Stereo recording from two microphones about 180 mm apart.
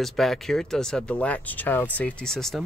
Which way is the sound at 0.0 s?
Centre (ahead or behind).